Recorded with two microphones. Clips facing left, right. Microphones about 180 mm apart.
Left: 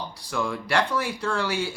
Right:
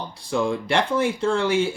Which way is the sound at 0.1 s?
25° right (ahead or behind).